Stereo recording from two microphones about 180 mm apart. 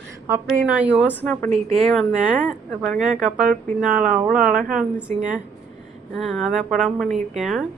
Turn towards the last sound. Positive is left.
turn(degrees=0)  # may be behind; listen again after turning